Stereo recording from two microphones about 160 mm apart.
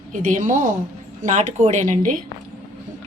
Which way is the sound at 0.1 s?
55° right (ahead or behind).